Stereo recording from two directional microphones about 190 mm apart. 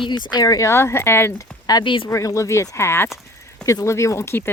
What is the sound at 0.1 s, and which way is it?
Speech, 20° left (ahead or behind).